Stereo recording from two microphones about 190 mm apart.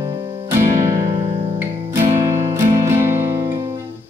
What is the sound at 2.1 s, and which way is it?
Music, 15° right (ahead or behind).